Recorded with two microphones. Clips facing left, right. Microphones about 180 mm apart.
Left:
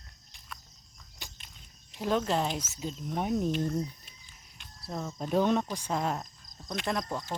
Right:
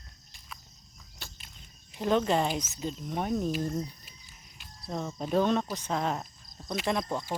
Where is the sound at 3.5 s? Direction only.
5° right (ahead or behind).